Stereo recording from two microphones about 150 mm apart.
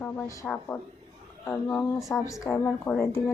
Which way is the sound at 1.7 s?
15° left (ahead or behind).